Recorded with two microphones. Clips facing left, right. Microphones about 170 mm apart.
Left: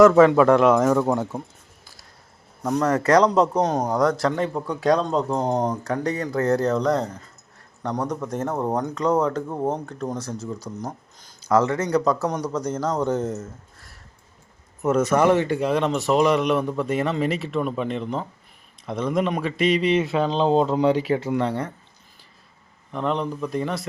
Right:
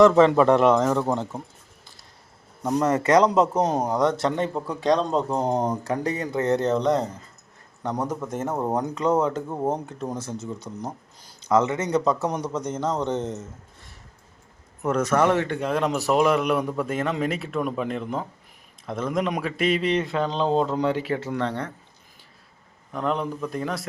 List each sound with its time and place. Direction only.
0.0 s speech: 5° left (ahead or behind)
2.6 s speech: 10° right (ahead or behind)
10.3 s speech: 25° right (ahead or behind)
11.4 s speech: centre (ahead or behind)
11.8 s speech: 25° right (ahead or behind)
12.5 s speech: centre (ahead or behind)
14.8 s speech: 5° left (ahead or behind)
20.2 s speech: 20° left (ahead or behind)
22.9 s speech: centre (ahead or behind)